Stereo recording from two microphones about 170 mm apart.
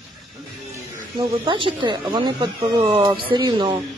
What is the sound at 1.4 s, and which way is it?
Speech, 30° right (ahead or behind).